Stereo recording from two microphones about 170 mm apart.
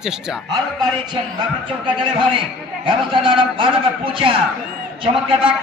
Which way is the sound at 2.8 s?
30° right (ahead or behind).